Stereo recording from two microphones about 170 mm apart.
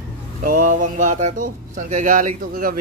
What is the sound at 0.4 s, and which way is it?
Speech, 50° right (ahead or behind).